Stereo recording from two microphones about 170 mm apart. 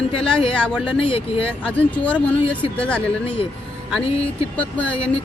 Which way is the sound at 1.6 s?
10° left (ahead or behind).